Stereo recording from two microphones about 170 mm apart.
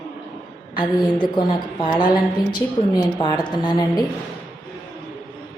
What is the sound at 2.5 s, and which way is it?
A woman's voice, 25° left (ahead or behind).